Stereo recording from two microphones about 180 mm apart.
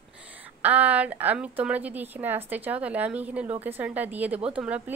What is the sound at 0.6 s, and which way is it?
A woman's voice, 10° right (ahead or behind).